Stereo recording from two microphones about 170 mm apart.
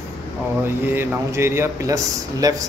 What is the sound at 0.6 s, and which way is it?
A man's voice, 15° right (ahead or behind).